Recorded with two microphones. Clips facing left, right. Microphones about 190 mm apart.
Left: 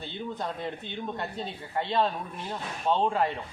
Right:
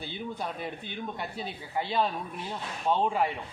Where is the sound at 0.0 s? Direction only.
10° right (ahead or behind).